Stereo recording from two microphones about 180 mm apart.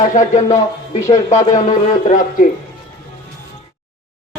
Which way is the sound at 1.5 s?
45° left (ahead or behind).